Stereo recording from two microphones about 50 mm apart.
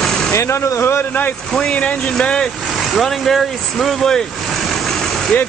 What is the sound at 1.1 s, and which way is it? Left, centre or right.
Speech, left.